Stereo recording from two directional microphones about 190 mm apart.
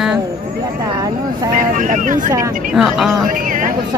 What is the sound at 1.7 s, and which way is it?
Speech, 45° right (ahead or behind).